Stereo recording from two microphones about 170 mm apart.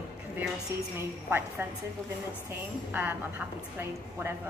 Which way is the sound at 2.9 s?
10° right (ahead or behind).